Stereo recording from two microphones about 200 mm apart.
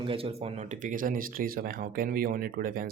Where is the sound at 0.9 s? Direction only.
45° right (ahead or behind).